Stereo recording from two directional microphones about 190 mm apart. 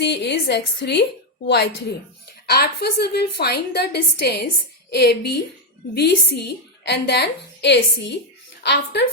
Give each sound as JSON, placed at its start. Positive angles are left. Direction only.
{"t": 0.0, "sound": "a woman's voice", "side_deg": 60}